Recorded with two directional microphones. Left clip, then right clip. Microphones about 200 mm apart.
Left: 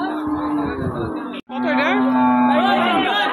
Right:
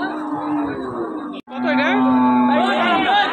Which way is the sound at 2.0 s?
55° left (ahead or behind).